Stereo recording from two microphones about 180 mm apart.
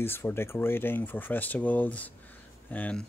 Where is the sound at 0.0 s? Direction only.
10° left (ahead or behind).